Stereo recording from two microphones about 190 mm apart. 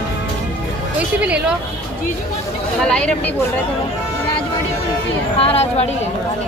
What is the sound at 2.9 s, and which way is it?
Speech, 5° left (ahead or behind).